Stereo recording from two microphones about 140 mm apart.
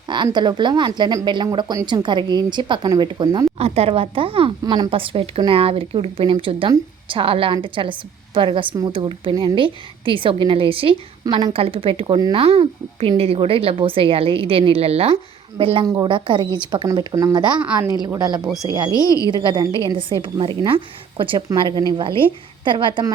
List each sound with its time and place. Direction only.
0.3 s speech: 35° right (ahead or behind)
3.6 s speech: 45° right (ahead or behind)
18.9 s a woman's voice: 25° left (ahead or behind)
19.3 s speech: 35° right (ahead or behind)